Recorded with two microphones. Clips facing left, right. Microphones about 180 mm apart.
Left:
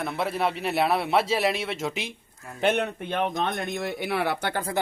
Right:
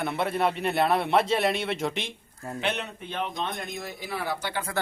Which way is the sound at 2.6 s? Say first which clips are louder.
Left 8 dB; 50° left (ahead or behind).